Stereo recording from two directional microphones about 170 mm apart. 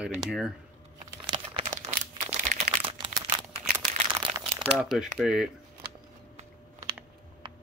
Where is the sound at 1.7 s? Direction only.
45° right (ahead or behind).